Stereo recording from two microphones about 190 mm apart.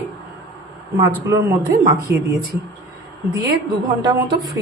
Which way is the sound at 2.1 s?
60° right (ahead or behind).